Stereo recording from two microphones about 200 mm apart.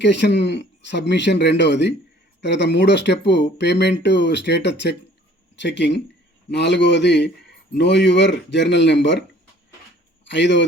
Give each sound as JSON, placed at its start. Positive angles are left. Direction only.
{"t": 0.0, "sound": "speech", "side_deg": 60}
{"t": 10.2, "sound": "speech", "side_deg": 60}